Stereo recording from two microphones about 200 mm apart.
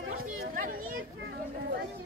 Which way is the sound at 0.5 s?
45° right (ahead or behind).